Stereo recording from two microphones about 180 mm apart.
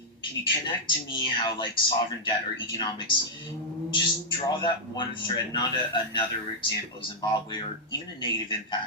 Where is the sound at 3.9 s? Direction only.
25° left (ahead or behind).